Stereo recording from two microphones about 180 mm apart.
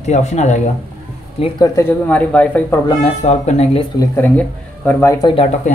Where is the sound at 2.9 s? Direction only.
35° left (ahead or behind).